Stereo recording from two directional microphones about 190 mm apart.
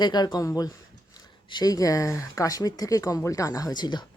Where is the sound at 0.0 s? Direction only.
20° left (ahead or behind).